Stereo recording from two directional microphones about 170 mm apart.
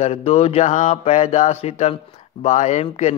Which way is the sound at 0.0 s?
35° left (ahead or behind).